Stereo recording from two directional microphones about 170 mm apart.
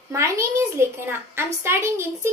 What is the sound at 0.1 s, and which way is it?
A child's voice, 20° right (ahead or behind).